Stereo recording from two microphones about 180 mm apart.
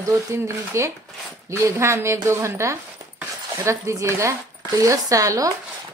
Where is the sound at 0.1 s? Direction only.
15° right (ahead or behind).